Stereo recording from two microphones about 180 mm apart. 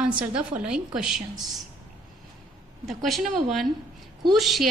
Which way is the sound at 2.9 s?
Centre (ahead or behind).